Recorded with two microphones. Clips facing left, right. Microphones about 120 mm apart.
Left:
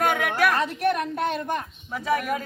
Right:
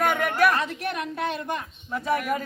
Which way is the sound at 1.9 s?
5° left (ahead or behind).